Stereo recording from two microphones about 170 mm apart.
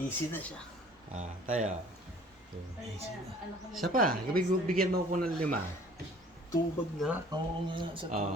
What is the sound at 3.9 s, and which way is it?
Speech, 55° right (ahead or behind).